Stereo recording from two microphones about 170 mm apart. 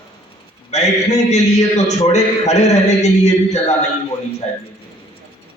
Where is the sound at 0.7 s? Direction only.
40° left (ahead or behind).